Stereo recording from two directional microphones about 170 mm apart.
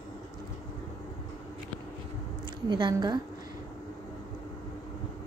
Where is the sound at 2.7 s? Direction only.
25° right (ahead or behind).